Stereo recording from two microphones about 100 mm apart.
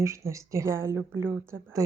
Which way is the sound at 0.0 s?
30° right (ahead or behind).